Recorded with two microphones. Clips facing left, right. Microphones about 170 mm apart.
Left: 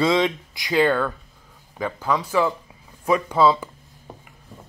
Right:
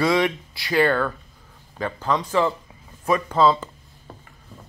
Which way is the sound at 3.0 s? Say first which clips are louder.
Left 1 dB; 10° left (ahead or behind).